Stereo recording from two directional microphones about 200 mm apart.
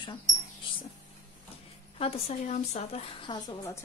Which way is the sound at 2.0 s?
30° left (ahead or behind).